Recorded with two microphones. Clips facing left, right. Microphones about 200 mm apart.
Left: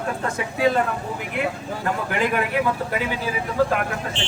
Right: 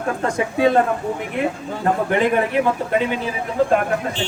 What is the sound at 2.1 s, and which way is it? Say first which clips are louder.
Speech: right 4 dB; 30° right (ahead or behind).